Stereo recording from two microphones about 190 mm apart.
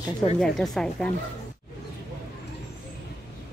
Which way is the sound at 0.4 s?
5° left (ahead or behind).